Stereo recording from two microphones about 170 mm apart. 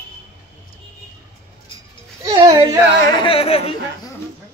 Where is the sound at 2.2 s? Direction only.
25° right (ahead or behind).